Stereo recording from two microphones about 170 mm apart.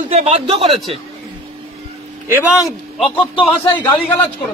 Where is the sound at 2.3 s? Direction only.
10° right (ahead or behind).